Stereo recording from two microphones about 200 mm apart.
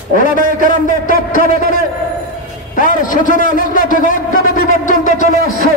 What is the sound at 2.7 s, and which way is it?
A man's voice, 40° left (ahead or behind).